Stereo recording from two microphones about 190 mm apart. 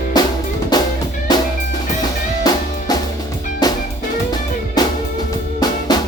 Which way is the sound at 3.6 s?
20° left (ahead or behind).